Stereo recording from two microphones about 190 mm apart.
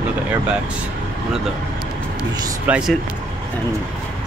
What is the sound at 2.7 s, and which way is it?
Speech, 10° right (ahead or behind).